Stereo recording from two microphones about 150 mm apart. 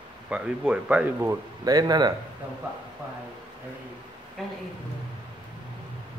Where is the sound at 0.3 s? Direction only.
5° right (ahead or behind).